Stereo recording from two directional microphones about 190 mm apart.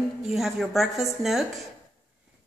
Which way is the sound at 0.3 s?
Centre (ahead or behind).